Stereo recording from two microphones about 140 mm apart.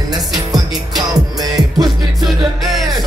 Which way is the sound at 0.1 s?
25° right (ahead or behind).